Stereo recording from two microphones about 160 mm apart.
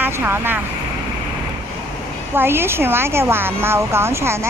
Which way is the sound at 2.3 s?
15° right (ahead or behind).